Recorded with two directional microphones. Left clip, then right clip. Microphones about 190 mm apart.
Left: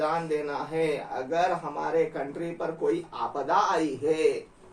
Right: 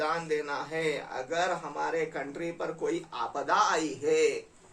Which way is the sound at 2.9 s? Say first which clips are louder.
Left 4 dB; 20° right (ahead or behind).